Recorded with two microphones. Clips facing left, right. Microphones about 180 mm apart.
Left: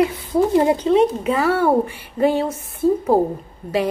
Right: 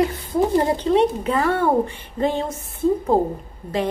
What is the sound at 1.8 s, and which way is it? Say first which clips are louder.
A woman's voice: left 4 dB; 10° left (ahead or behind).